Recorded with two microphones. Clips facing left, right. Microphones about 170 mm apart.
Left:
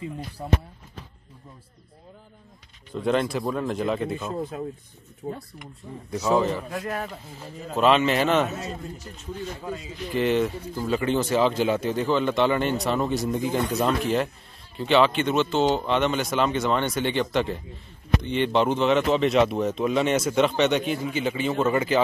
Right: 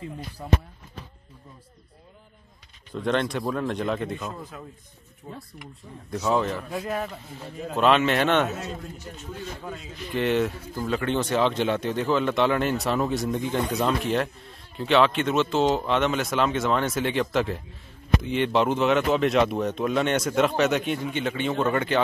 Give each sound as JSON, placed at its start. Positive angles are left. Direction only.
{"t": 0.4, "sound": "speech", "side_deg": 15}
{"t": 2.9, "sound": "speech", "side_deg": 0}
{"t": 4.2, "sound": "speech", "side_deg": 25}
{"t": 5.3, "sound": "speech", "side_deg": 0}